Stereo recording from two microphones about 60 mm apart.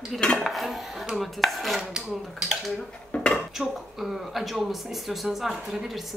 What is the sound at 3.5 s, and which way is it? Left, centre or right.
Speech, centre.